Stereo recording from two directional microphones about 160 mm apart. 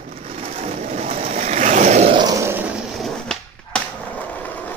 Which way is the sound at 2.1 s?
25° right (ahead or behind).